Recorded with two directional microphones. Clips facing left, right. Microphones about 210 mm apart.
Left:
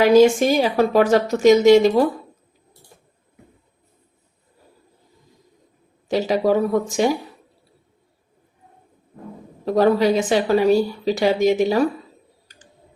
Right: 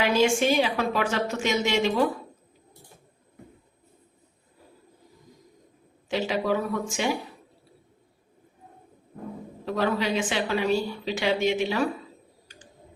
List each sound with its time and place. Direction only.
0.0 s a woman's voice: 40° left (ahead or behind)
6.1 s a woman's voice: 40° left (ahead or behind)
9.6 s a woman's voice: 40° left (ahead or behind)